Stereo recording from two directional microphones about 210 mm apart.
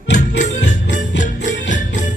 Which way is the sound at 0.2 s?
35° left (ahead or behind).